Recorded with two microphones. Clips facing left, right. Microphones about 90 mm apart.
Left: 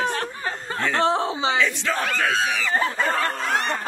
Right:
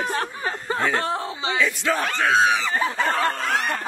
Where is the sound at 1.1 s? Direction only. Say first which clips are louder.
Left 4 dB; 25° left (ahead or behind).